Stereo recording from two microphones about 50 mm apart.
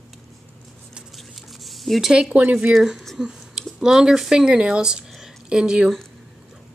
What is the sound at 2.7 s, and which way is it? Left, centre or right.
Speech, centre.